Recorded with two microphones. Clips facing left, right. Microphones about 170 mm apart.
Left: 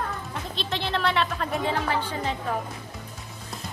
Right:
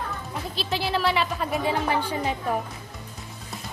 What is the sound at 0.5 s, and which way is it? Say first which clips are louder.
Speech: right 2 dB; 5° right (ahead or behind).